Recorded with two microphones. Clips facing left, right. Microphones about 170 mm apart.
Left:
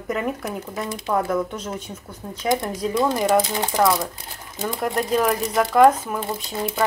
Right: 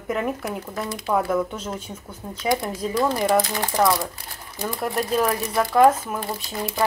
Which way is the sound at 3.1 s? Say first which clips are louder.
Left 1 dB; 15° left (ahead or behind).